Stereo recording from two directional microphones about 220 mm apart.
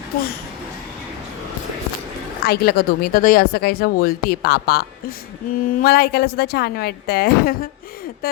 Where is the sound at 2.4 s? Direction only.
45° left (ahead or behind).